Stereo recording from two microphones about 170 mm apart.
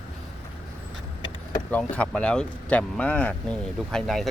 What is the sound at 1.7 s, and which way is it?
Speech, 5° left (ahead or behind).